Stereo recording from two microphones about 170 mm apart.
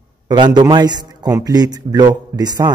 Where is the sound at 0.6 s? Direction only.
25° right (ahead or behind).